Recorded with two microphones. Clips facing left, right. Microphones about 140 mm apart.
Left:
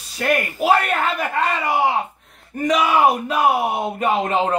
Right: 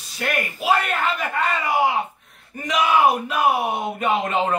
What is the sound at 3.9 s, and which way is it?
Speech, 35° left (ahead or behind).